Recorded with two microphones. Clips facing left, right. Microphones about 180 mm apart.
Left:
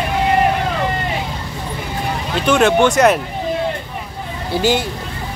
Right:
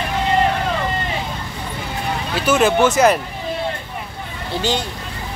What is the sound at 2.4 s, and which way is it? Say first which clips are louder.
Speech: left 2 dB; centre (ahead or behind).